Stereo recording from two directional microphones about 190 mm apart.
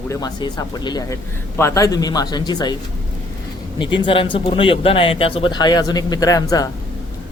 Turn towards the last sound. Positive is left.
turn(degrees=20)  # may be behind; listen again after turning